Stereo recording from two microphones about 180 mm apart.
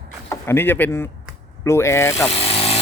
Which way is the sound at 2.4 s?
30° left (ahead or behind).